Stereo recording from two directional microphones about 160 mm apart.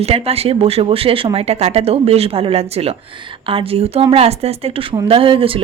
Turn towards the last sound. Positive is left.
turn(degrees=-35)  # may be behind; listen again after turning